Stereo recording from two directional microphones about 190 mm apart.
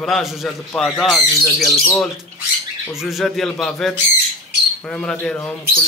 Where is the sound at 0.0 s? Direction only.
Centre (ahead or behind).